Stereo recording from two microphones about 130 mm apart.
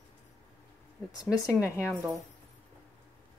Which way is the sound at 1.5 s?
20° left (ahead or behind).